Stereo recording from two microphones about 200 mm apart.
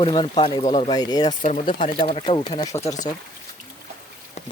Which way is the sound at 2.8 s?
35° left (ahead or behind).